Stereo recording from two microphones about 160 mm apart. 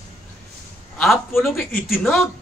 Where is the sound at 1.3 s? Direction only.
Centre (ahead or behind).